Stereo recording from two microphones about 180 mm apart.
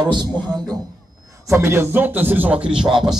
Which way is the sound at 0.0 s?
25° right (ahead or behind).